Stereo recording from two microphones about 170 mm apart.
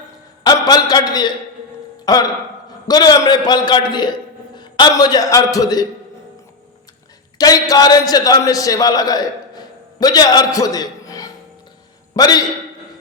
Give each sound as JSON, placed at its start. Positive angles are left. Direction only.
{"t": 0.4, "sound": "a sound", "side_deg": 25}
{"t": 2.0, "sound": "a man's voice", "side_deg": 20}
{"t": 7.3, "sound": "a man's voice", "side_deg": 20}